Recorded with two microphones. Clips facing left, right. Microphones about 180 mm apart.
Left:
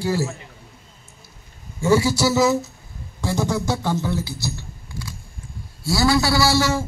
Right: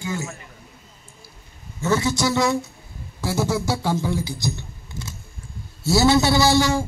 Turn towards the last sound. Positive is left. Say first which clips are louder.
# right 1 dB
turn(degrees=-15)  # may be behind; listen again after turning